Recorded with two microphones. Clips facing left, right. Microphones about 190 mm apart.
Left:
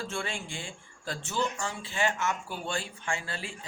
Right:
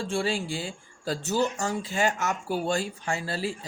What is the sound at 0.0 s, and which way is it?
Speech, 30° right (ahead or behind).